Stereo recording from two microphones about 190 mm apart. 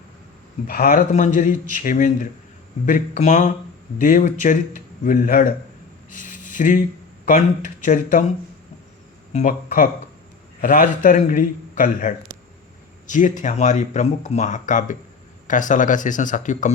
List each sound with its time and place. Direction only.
0.7 s speech: 45° left (ahead or behind)
6.1 s a sound: 45° left (ahead or behind)
7.3 s speech: 45° left (ahead or behind)
9.3 s speech: 40° left (ahead or behind)